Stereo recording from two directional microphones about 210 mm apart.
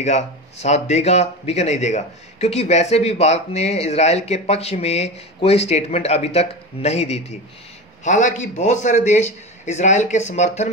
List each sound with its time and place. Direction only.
0.0 s speech: 30° left (ahead or behind)